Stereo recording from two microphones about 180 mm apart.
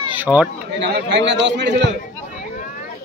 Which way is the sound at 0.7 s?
75° right (ahead or behind).